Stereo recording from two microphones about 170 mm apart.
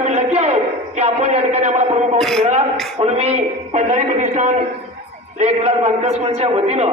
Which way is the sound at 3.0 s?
40° right (ahead or behind).